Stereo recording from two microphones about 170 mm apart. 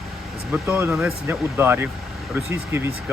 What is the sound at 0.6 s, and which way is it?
Speech, 15° right (ahead or behind).